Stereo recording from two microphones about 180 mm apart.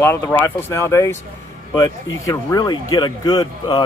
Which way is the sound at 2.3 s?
20° left (ahead or behind).